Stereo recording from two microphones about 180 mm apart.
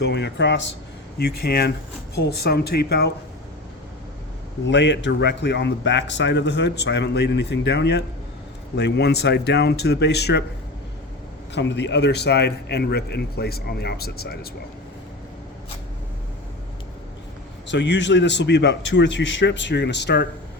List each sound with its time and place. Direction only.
0.0 s speech: 70° left (ahead or behind); by 0.7 s 85° left
1.2 s a man's voice: 60° left (ahead or behind)
4.6 s speech: 85° left; by 10.4 s 65° left (ahead or behind)
11.5 s a man's voice: 75° left (ahead or behind); by 14.3 s 60° left (ahead or behind)
17.7 s speech: 80° left